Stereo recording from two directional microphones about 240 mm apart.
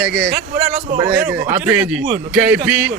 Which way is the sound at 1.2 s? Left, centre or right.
Centre.